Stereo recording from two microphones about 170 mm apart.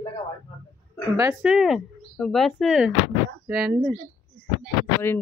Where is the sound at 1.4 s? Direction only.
5° right (ahead or behind).